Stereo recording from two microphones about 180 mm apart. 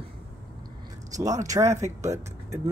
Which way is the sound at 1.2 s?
20° right (ahead or behind).